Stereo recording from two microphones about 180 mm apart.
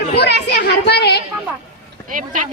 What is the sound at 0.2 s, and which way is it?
A woman's voice, 70° left (ahead or behind).